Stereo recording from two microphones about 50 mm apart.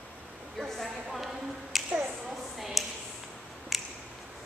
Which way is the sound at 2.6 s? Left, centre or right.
Centre.